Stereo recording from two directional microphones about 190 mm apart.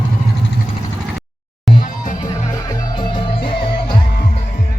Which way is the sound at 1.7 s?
Centre (ahead or behind).